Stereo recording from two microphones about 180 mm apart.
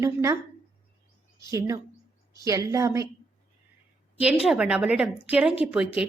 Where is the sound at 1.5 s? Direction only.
15° right (ahead or behind).